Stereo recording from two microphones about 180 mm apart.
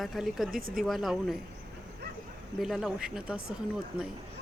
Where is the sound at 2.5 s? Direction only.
Centre (ahead or behind).